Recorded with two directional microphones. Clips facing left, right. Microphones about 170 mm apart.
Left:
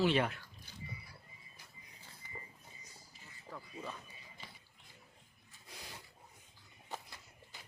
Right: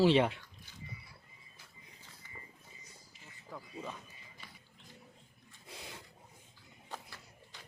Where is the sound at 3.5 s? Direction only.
5° right (ahead or behind).